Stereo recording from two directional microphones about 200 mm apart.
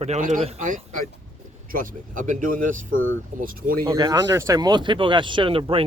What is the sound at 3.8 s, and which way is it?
Speech, 20° right (ahead or behind).